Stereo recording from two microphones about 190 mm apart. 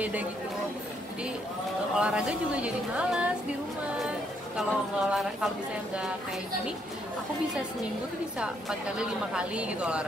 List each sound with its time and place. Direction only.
0.0 s speech: 5° right (ahead or behind)
2.0 s a woman's voice: 5° right (ahead or behind)
4.6 s a woman's voice: centre (ahead or behind)
8.4 s a woman's voice: 5° right (ahead or behind)